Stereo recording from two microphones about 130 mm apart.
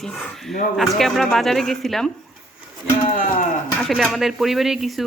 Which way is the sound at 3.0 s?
85° left.